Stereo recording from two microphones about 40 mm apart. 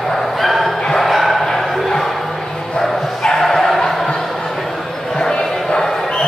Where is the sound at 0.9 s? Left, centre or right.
Centre.